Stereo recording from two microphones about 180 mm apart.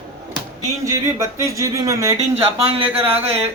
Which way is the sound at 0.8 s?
15° right (ahead or behind).